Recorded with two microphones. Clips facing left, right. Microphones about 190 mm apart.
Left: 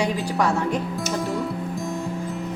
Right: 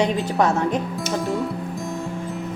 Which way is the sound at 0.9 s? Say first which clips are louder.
Right 2 dB; centre (ahead or behind).